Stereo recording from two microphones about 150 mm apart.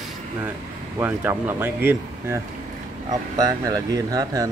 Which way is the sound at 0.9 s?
15° right (ahead or behind).